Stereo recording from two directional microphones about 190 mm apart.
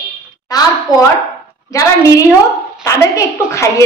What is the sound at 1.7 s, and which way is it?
A woman's voice, 15° left (ahead or behind).